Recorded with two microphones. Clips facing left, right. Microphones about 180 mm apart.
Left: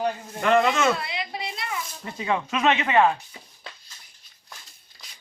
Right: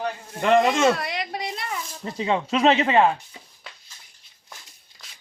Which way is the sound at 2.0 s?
30° right (ahead or behind).